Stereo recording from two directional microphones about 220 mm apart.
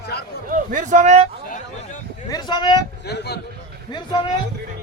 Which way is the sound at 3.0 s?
50° left (ahead or behind).